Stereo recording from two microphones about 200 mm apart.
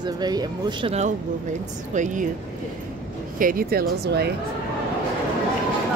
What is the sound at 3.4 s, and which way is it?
Speech, 45° right (ahead or behind).